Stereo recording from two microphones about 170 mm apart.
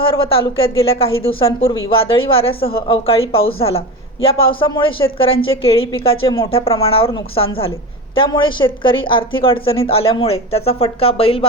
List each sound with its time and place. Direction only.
0.0 s speech: 30° left (ahead or behind)